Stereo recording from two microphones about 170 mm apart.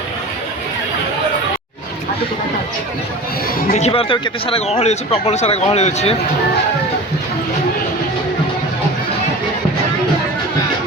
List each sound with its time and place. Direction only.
3.7 s speech: 40° left (ahead or behind)